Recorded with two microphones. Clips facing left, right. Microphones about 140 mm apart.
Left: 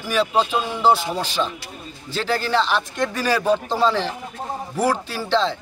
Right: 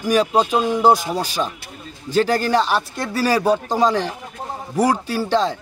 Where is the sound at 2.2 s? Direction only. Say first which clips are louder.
Right 6 dB; 45° right (ahead or behind).